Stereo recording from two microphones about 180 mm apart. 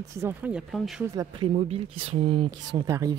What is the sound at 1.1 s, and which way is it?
Speech, 30° right (ahead or behind).